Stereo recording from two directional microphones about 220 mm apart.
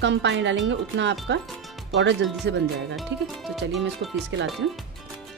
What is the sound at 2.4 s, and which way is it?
Speech, 55° right (ahead or behind).